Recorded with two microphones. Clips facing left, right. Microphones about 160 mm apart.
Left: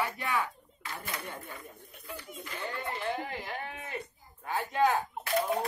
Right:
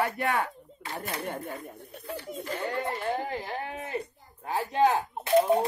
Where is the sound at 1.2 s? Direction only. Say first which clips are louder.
Right 8 dB; 60° right (ahead or behind).